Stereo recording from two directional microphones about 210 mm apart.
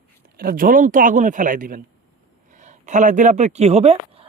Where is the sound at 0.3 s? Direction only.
45° right (ahead or behind).